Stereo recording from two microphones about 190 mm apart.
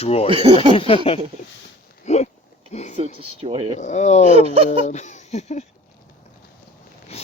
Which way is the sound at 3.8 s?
35° left (ahead or behind).